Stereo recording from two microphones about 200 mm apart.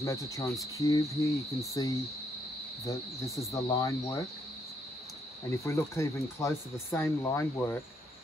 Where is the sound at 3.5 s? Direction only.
20° left (ahead or behind).